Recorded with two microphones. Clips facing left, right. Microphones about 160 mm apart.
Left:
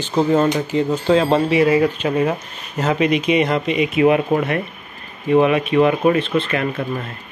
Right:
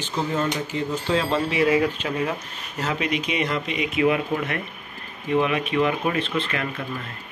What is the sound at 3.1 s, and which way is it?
Speech, 70° left (ahead or behind).